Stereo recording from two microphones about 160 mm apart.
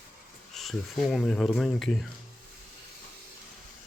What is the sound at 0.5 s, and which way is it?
Speech, centre (ahead or behind).